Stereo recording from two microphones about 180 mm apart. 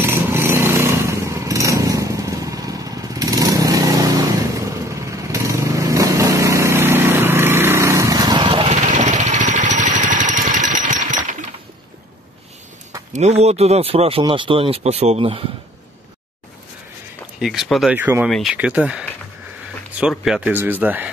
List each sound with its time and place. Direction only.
0.1 s a sound: 15° right (ahead or behind)
8.7 s vehicle: 40° right (ahead or behind)
13.1 s speech: 35° right (ahead or behind)
17.4 s speech: centre (ahead or behind)